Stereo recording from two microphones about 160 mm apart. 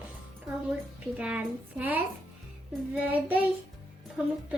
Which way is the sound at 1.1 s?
5° right (ahead or behind).